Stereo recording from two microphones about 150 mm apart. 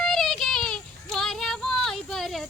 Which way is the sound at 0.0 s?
Centre (ahead or behind).